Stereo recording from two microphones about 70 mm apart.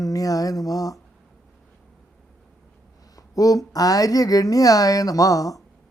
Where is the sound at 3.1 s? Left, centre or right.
Left.